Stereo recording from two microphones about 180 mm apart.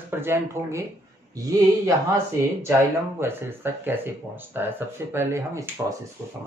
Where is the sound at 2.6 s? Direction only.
15° right (ahead or behind).